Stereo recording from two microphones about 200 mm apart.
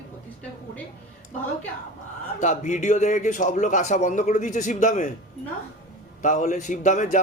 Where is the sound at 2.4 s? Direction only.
35° left (ahead or behind).